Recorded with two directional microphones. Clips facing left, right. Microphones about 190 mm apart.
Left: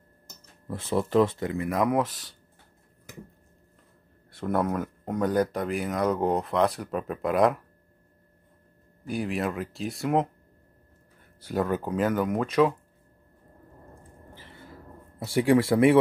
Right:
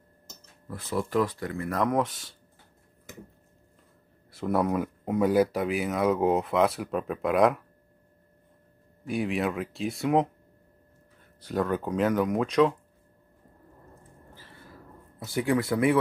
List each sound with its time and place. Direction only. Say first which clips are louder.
0.7 s speech: left 3 dB; 25° left (ahead or behind); by 2.3 s centre (ahead or behind)
4.3 s speech: right 1 dB; centre (ahead or behind)
9.0 s speech: right 1 dB; centre (ahead or behind)
11.4 s speech: left 1 dB; 10° left (ahead or behind)
15.4 s speech: left 4 dB; 25° left (ahead or behind)